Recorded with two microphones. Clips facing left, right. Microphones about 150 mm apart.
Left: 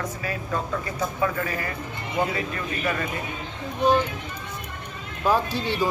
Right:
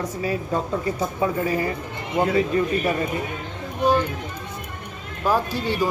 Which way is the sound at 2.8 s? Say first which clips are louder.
Right 4 dB; 30° right (ahead or behind).